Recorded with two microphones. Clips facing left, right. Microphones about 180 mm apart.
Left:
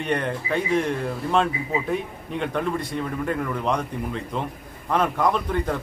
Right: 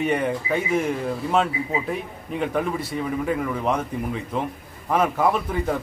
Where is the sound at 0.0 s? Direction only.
5° right (ahead or behind).